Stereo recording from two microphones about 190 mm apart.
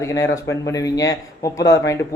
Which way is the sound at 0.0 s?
15° left (ahead or behind).